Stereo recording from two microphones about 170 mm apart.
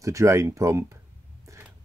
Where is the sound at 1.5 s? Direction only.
15° right (ahead or behind).